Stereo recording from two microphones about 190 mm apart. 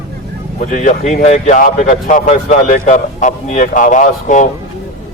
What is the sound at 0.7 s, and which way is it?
Speech, 40° left (ahead or behind).